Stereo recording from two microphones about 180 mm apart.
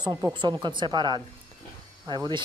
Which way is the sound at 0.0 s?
25° right (ahead or behind).